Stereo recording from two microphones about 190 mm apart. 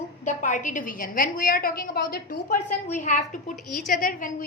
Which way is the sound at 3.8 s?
45° left (ahead or behind).